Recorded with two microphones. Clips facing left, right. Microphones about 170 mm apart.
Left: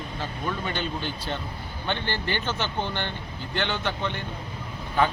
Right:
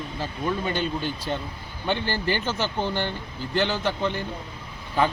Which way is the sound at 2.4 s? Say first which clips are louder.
Right 2 dB; 5° right (ahead or behind).